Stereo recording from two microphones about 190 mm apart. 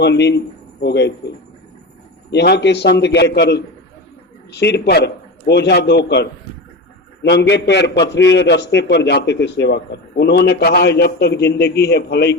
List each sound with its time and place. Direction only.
0.0 s speech: 65° left (ahead or behind)
2.3 s a man's voice: 60° left (ahead or behind)